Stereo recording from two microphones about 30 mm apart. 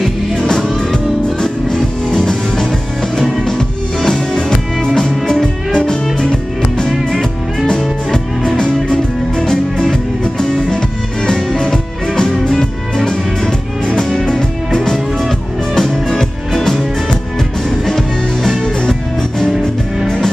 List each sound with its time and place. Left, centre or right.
2.0 s music: centre
5.7 s music: left
9.5 s music: centre
10.4 s music: left
13.8 s music: centre
17.8 s music: centre